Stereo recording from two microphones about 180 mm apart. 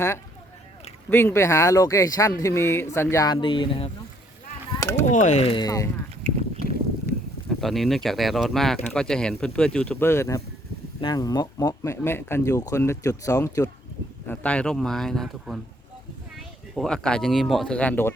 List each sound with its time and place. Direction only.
1.1 s speech: 15° left (ahead or behind)
3.3 s speech: 30° left (ahead or behind)
4.8 s a sound: 15° left (ahead or behind)
5.0 s speech: 40° left (ahead or behind); by 5.9 s 20° left (ahead or behind)
7.6 s speech: centre (ahead or behind); by 13.7 s 15° left (ahead or behind)
14.3 s speech: 5° left (ahead or behind)
16.7 s speech: 5° left (ahead or behind)